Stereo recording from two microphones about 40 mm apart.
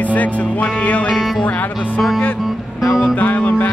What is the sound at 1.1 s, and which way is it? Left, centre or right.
Speech, centre.